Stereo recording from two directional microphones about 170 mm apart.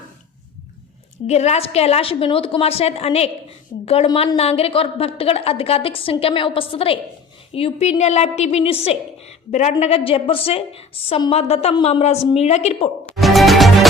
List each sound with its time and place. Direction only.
1.3 s a woman's voice: 40° left (ahead or behind)
13.1 s music: centre (ahead or behind)